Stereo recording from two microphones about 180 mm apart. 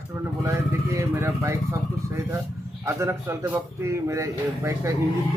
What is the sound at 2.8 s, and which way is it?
Speech, 15° right (ahead or behind).